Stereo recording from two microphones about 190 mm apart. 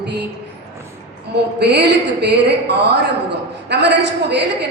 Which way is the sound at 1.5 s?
60° right (ahead or behind).